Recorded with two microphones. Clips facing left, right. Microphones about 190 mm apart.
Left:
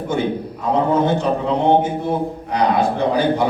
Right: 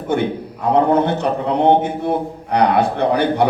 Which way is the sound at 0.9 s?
65° right (ahead or behind).